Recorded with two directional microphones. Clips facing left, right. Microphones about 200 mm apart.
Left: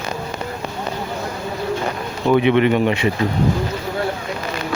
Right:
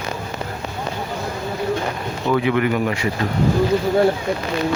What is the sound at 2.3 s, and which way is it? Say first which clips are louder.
Speech: left 4 dB; 20° left (ahead or behind).